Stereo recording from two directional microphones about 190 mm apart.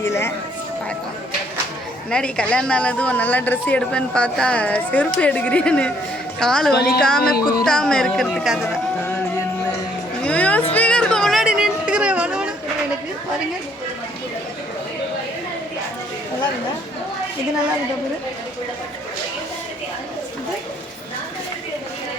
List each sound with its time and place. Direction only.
0.0 s a woman's voice: 15° left (ahead or behind)
2.0 s a woman's voice: 5° left (ahead or behind)
6.7 s a woman's voice: 55° left (ahead or behind)
7.2 s music: 50° left (ahead or behind)
7.6 s a woman's voice: 5° left (ahead or behind)
10.2 s a sound: 5° left (ahead or behind)
10.7 s music: 5° left (ahead or behind)